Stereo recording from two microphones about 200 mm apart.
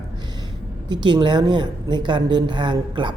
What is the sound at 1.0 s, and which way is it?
Speech, 25° right (ahead or behind).